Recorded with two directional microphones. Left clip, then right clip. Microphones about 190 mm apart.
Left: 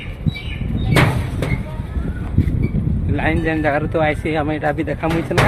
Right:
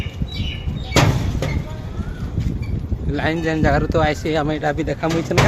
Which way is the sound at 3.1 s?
10° right (ahead or behind).